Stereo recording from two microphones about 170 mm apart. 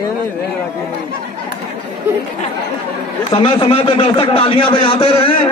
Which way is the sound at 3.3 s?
30° left (ahead or behind).